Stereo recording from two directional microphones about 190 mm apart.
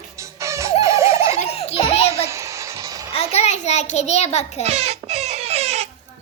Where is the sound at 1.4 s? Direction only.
35° left (ahead or behind).